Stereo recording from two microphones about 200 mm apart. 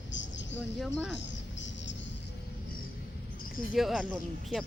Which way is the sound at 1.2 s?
65° left (ahead or behind).